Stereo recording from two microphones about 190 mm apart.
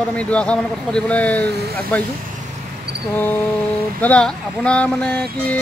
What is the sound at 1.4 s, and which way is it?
Speech, 60° right (ahead or behind).